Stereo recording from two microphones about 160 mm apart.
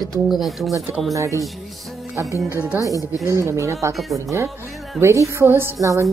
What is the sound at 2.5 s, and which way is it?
A woman's voice, 10° right (ahead or behind).